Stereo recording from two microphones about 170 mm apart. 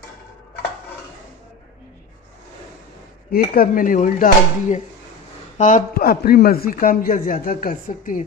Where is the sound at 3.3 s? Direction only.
55° left (ahead or behind).